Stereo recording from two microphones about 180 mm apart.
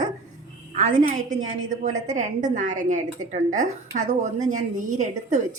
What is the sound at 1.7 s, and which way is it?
A woman's voice, 45° right (ahead or behind).